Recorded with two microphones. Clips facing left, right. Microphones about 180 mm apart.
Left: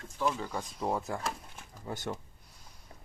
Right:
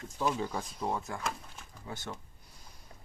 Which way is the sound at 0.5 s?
Centre (ahead or behind).